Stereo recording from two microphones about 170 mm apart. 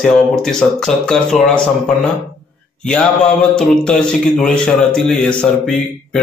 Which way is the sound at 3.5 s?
5° left (ahead or behind).